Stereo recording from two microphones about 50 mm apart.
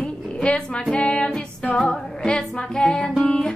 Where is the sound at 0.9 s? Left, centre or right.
Centre.